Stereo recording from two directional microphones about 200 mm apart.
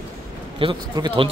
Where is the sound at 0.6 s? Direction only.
25° right (ahead or behind).